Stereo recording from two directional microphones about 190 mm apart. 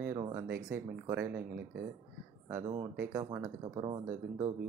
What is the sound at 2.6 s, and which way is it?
Speech, 25° right (ahead or behind).